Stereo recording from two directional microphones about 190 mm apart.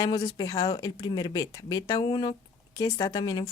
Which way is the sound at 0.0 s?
20° left (ahead or behind).